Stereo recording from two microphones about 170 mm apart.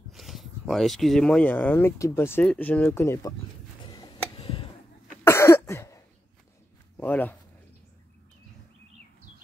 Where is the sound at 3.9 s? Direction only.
25° left (ahead or behind).